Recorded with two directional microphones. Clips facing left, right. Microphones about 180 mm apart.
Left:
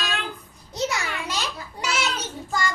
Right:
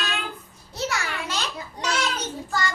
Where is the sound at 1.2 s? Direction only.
10° left (ahead or behind).